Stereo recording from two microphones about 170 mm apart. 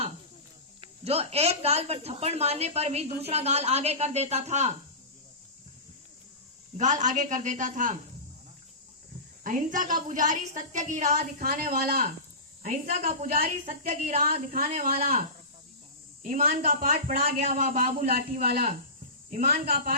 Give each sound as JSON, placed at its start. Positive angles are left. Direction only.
{"t": 0.8, "sound": "a woman's voice", "side_deg": -35}
{"t": 6.7, "sound": "speech", "side_deg": -45}
{"t": 9.4, "sound": "speech", "side_deg": -50}
{"t": 11.4, "sound": "speech", "side_deg": -60}
{"t": 12.6, "sound": "speech", "side_deg": -50}
{"t": 14.1, "sound": "a woman's voice", "side_deg": -40}
{"t": 15.0, "sound": "speech", "side_deg": -55}